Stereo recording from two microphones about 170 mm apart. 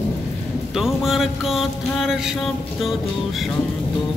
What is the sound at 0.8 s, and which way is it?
Music, centre (ahead or behind).